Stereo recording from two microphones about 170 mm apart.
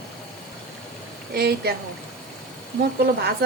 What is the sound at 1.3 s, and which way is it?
Speech, 70° right (ahead or behind).